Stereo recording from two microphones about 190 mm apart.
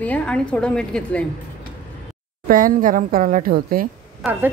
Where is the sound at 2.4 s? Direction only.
45° right (ahead or behind).